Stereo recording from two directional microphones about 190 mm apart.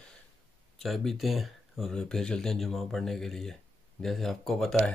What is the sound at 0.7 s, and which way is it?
Speech, centre (ahead or behind).